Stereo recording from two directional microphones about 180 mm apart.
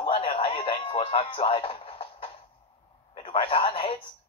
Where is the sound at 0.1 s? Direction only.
30° left (ahead or behind).